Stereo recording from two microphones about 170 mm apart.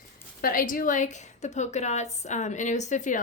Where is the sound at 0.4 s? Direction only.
55° left (ahead or behind).